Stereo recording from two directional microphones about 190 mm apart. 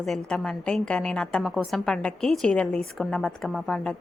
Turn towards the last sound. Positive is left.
turn(degrees=0)  # may be behind; listen again after turning